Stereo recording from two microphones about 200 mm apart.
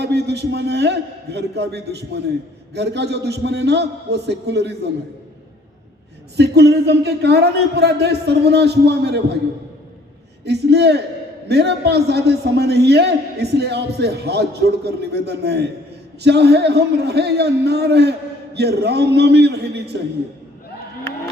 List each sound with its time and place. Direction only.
0.0 s a man's voice: 55° right (ahead or behind)
6.3 s a man's voice: 55° right (ahead or behind)
10.4 s a man's voice: 55° right (ahead or behind)